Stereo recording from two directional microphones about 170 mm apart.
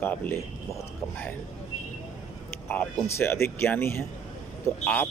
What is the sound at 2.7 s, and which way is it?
Speech, 15° left (ahead or behind).